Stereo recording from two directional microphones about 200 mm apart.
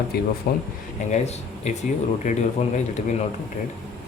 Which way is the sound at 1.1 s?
35° left (ahead or behind).